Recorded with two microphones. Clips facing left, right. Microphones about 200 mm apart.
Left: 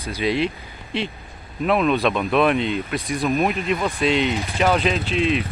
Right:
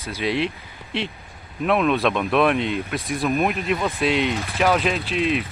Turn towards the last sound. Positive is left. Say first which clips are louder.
# left 1 dB
turn(degrees=0)  # may be behind; listen again after turning